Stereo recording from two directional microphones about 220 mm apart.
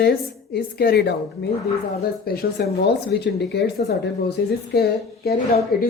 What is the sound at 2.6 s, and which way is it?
Speech, 45° left (ahead or behind).